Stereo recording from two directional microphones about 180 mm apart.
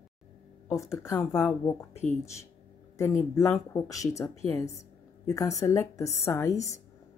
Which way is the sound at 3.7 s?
20° left (ahead or behind).